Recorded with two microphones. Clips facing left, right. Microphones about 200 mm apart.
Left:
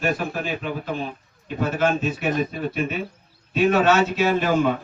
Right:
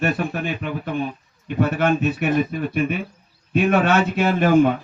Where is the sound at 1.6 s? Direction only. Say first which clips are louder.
Right 3 dB; 60° right (ahead or behind).